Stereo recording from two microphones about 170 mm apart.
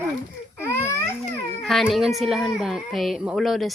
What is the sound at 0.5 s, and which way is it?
Speech, 15° left (ahead or behind).